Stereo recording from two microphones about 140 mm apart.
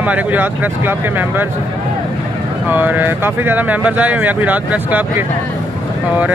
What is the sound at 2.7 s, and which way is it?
Speech, 15° right (ahead or behind).